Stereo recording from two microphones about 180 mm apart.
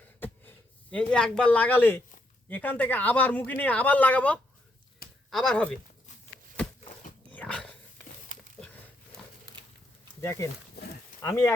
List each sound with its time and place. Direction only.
0.2 s a sound: 10° left (ahead or behind)
2.5 s speech: 10° left (ahead or behind)
7.3 s dog: 5° left (ahead or behind)
10.2 s speech: 15° left (ahead or behind)